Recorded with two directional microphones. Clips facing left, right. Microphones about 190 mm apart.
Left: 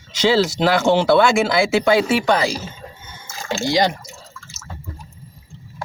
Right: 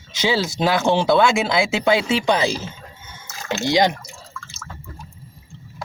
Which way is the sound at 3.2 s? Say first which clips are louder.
Left 1 dB; 30° left (ahead or behind).